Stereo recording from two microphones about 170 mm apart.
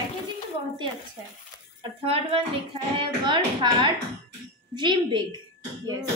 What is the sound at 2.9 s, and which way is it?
A woman's voice, 30° right (ahead or behind).